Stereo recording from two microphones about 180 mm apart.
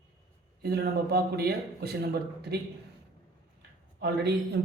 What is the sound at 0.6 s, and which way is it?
A man's voice, 60° right (ahead or behind).